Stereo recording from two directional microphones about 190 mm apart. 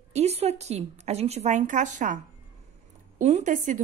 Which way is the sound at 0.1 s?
35° right (ahead or behind).